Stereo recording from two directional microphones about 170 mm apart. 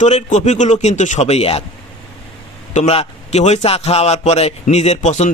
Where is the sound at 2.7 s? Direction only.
40° left (ahead or behind).